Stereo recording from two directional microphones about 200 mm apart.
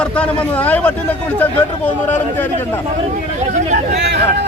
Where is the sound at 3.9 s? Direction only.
55° right (ahead or behind).